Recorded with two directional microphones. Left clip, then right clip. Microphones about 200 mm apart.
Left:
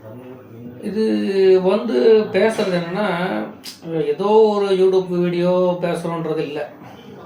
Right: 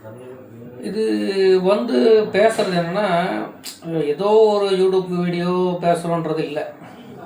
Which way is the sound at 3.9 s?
10° right (ahead or behind).